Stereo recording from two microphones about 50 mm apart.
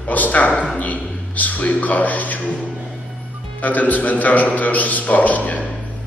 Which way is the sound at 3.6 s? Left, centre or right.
Left.